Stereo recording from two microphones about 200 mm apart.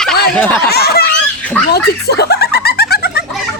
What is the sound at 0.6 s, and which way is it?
Snicker, 50° left (ahead or behind).